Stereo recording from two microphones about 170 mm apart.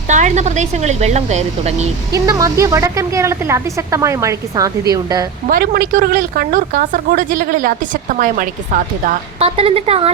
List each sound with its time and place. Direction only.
0.1 s speech: 45° right (ahead or behind)
2.1 s a woman's voice: 20° right (ahead or behind)
5.5 s a woman's voice: 60° right (ahead or behind)
9.4 s speech: 35° right (ahead or behind)